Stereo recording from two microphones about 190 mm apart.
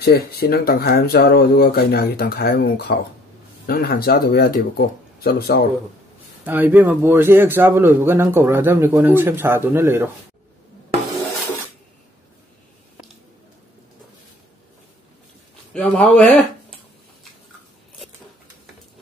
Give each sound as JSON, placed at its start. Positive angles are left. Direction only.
{"t": 0.0, "sound": "speech", "side_deg": 55}
{"t": 6.4, "sound": "a man's voice", "side_deg": -10}
{"t": 15.7, "sound": "a man's voice", "side_deg": 5}